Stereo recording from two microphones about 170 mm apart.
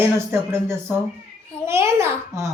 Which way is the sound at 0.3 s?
15° right (ahead or behind).